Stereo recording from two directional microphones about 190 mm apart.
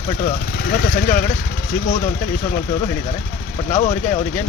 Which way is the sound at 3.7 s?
40° left (ahead or behind).